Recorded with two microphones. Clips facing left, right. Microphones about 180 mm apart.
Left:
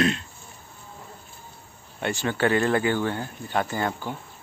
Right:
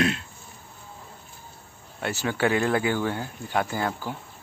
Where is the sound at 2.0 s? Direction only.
5° right (ahead or behind).